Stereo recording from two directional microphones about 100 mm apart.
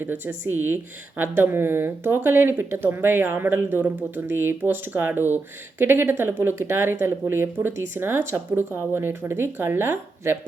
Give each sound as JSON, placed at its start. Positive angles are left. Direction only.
{"t": 0.0, "sound": "speech", "side_deg": -20}